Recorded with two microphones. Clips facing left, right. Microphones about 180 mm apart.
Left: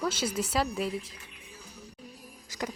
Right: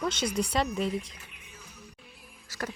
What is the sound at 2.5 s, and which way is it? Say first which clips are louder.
Speech: left 1 dB; 15° left (ahead or behind).